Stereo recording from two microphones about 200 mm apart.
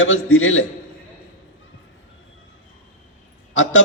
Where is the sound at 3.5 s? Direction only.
75° left (ahead or behind).